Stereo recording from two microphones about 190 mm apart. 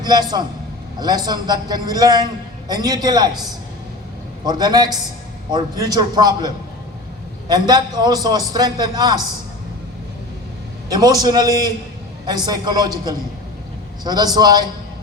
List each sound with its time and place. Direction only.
0.0 s a man's voice: 20° right (ahead or behind)
7.7 s a man's voice: 20° right (ahead or behind)
10.8 s a man's voice: 20° right (ahead or behind)